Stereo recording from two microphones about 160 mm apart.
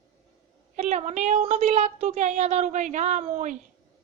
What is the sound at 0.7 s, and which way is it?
A child's voice, 50° right (ahead or behind).